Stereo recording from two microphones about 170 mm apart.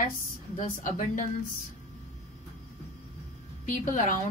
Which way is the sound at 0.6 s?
50° left (ahead or behind).